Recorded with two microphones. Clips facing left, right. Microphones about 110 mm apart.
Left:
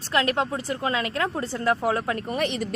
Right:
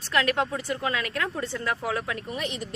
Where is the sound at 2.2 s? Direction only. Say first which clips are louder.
Left 6 dB; 65° left (ahead or behind).